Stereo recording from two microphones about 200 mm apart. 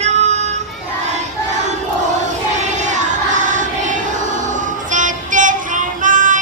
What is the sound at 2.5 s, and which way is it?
Child singing, 35° right (ahead or behind).